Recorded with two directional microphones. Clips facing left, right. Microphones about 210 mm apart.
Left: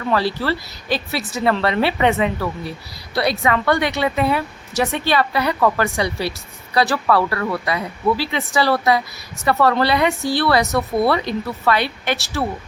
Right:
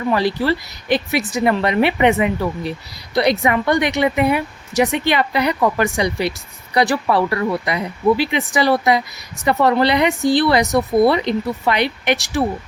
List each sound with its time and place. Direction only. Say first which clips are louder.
0.1 s a woman's voice: right 2 dB; 15° right (ahead or behind)